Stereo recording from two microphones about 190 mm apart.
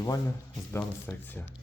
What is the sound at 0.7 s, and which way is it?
Speech, 10° left (ahead or behind).